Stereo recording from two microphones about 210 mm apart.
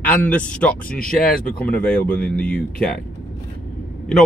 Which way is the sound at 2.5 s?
45° left (ahead or behind).